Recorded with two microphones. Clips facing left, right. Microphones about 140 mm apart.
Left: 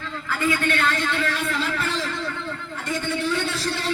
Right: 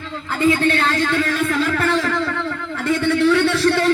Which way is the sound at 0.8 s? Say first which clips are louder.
Right 5 dB; 40° right (ahead or behind).